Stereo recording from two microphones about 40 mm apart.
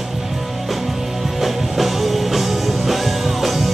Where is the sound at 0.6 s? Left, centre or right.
Centre.